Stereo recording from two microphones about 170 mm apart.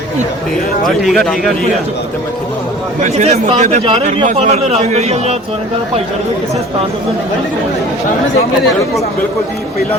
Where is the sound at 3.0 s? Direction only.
40° right (ahead or behind).